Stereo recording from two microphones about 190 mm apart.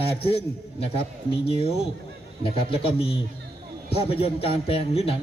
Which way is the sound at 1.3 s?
30° left (ahead or behind).